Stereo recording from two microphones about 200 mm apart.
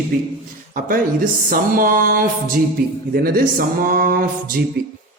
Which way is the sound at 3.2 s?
45° right (ahead or behind).